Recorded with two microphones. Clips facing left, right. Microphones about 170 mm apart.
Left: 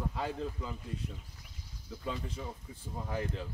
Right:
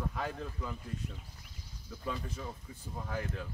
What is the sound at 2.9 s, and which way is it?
Speech, 15° left (ahead or behind).